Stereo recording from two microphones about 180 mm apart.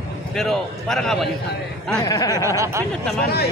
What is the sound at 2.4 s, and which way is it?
Speech, 15° right (ahead or behind).